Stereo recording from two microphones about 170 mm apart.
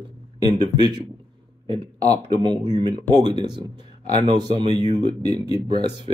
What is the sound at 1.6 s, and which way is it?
Speech, 25° right (ahead or behind).